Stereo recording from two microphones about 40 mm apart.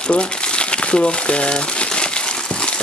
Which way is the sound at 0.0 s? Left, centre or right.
Left.